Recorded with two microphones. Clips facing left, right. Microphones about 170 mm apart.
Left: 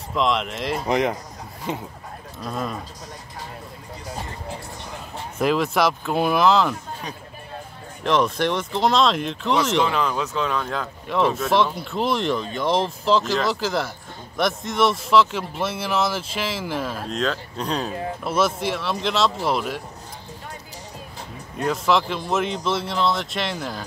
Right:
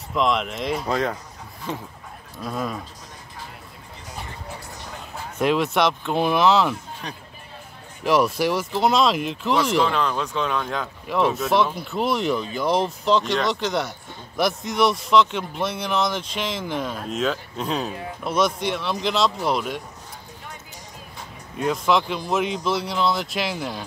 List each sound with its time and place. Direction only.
0.1 s speech: centre (ahead or behind)
0.8 s speech: 20° left (ahead or behind)
2.4 s speech: centre (ahead or behind)
5.4 s speech: centre (ahead or behind)
8.0 s speech: 5° right (ahead or behind)
21.5 s speech: centre (ahead or behind)